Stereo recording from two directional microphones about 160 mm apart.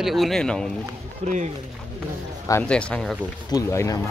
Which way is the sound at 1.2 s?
45° right (ahead or behind).